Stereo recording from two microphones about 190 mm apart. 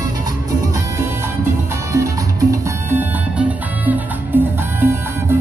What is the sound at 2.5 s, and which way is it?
Music, 10° right (ahead or behind).